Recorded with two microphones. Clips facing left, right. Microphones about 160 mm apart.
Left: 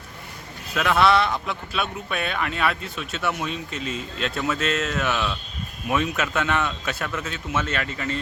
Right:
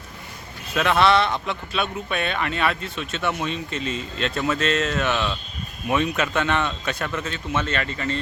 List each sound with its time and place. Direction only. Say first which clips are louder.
0.7 s speech: right 1 dB; centre (ahead or behind)